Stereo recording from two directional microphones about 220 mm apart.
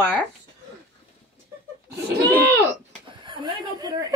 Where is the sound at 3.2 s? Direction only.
20° right (ahead or behind).